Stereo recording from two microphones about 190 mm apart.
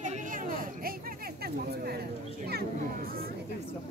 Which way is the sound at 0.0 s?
45° right (ahead or behind).